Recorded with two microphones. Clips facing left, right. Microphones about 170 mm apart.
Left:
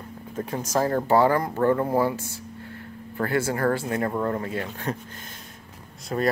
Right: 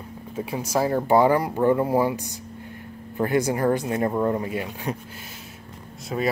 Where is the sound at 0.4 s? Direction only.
10° right (ahead or behind).